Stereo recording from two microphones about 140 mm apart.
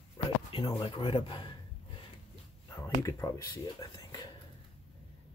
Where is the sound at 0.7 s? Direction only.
35° left (ahead or behind).